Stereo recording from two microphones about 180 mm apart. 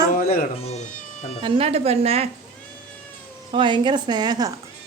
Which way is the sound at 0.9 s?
40° left (ahead or behind).